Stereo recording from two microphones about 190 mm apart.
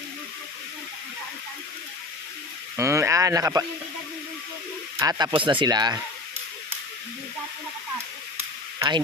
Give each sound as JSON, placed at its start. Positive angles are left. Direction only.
{"t": 2.8, "sound": "speech", "side_deg": -15}
{"t": 4.9, "sound": "speech", "side_deg": -20}
{"t": 8.7, "sound": "a sound", "side_deg": -20}